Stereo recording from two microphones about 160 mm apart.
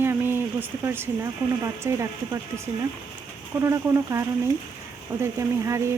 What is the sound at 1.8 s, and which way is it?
Speech, 20° right (ahead or behind).